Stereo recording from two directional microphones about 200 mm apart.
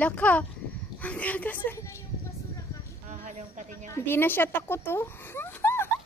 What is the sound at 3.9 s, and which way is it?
Speech, 10° left (ahead or behind).